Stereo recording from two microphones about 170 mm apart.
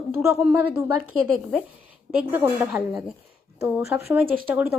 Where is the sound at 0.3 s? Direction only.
5° right (ahead or behind).